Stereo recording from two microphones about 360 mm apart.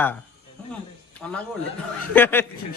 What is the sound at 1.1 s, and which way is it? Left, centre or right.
A man's voice, centre.